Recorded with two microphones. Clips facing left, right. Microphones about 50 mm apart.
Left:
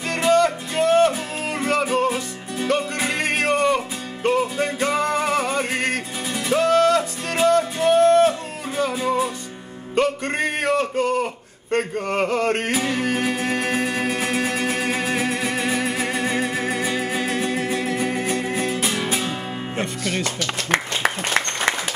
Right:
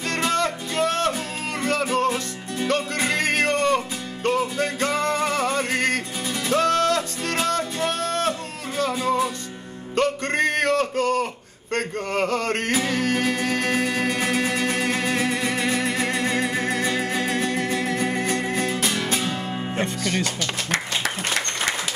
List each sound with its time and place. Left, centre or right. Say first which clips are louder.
0.1 s music: left 6 dB; centre
9.9 s a sound: left 1 dB; centre
11.7 s music: left 3 dB; centre
20.7 s applause: left 6 dB; left